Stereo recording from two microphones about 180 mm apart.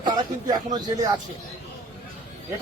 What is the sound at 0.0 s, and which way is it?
Speech, 25° right (ahead or behind).